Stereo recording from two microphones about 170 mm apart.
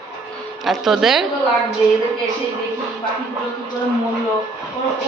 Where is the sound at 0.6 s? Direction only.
Centre (ahead or behind).